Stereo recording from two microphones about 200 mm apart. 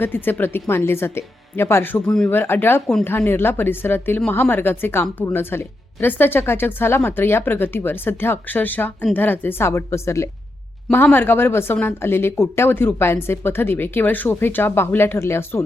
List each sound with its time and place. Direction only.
0.0 s speech: 10° left (ahead or behind)